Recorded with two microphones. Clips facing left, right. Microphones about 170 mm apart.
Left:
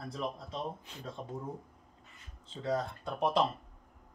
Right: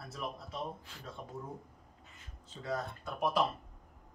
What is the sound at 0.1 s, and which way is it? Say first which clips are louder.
Speech: left 3 dB; 25° left (ahead or behind).